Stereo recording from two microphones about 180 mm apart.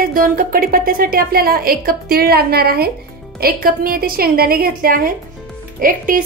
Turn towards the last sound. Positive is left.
turn(degrees=-50)  # may be behind; listen again after turning